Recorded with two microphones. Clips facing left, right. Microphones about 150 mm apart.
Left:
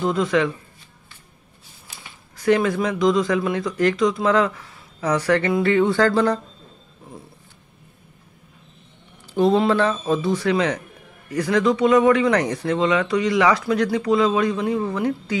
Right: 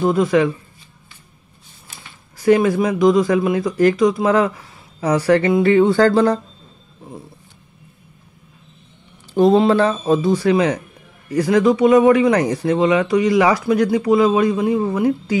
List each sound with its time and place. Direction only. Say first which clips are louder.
0.1 s speech: right 3 dB; 20° right (ahead or behind)
2.4 s speech: right 4 dB; 25° right (ahead or behind)
5.9 s speech: right 4 dB; 35° right (ahead or behind)
9.3 s speech: right 4 dB; 40° right (ahead or behind)
10.5 s speech: right 4 dB; 20° right (ahead or behind)
11.2 s speech: right 5 dB; 35° right (ahead or behind)
11.5 s speech: right 4 dB; 20° right (ahead or behind)